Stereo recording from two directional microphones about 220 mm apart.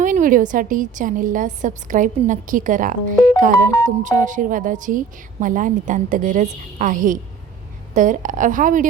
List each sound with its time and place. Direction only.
0.0 s a woman's voice: 35° right (ahead or behind)